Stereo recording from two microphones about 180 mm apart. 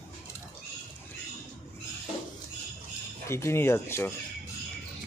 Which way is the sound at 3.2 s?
15° left (ahead or behind).